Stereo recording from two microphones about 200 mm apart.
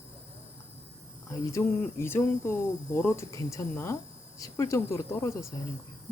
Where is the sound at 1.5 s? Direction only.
15° left (ahead or behind).